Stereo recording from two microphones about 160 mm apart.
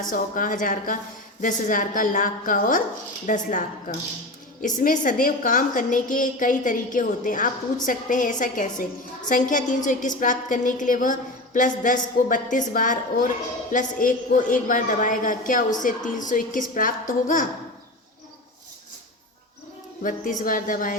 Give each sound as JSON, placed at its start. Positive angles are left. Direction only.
{"t": 0.0, "sound": "a woman's voice", "side_deg": 55}
{"t": 20.0, "sound": "a woman's voice", "side_deg": 55}